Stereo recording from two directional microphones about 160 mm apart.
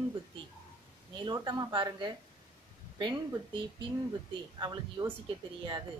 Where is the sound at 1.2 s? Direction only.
25° right (ahead or behind).